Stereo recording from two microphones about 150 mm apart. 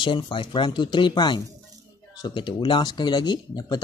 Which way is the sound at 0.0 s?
35° left (ahead or behind).